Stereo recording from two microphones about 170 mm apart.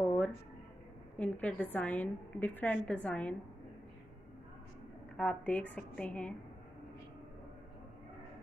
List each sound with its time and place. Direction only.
0.0 s a sound: 10° left (ahead or behind)
1.1 s a woman's voice: 10° left (ahead or behind)
5.1 s a woman's voice: 5° left (ahead or behind)